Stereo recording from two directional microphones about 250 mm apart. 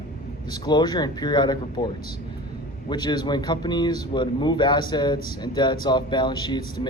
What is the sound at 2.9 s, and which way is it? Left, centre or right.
A man's voice, centre.